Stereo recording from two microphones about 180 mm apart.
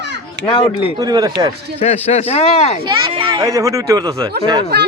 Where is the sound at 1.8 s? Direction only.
35° left (ahead or behind).